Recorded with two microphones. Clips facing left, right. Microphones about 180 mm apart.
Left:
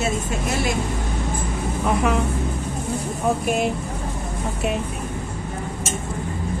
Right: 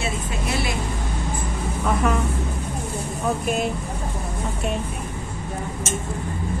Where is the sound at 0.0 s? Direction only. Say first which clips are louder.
Left 3 dB; 45° left (ahead or behind).